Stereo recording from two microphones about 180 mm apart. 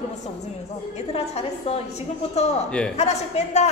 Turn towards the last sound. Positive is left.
turn(degrees=40)  # may be behind; listen again after turning